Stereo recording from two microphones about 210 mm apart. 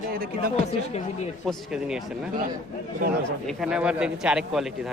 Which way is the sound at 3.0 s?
40° right (ahead or behind).